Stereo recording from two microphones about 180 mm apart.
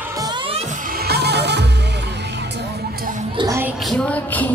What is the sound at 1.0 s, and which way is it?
Music, 65° right (ahead or behind).